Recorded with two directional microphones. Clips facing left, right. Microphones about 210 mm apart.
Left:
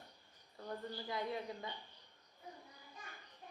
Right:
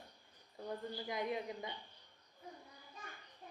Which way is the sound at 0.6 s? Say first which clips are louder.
Right 2 dB; 15° right (ahead or behind).